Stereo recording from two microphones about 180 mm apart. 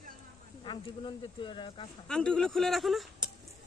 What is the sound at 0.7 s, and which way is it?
Speech, 25° left (ahead or behind).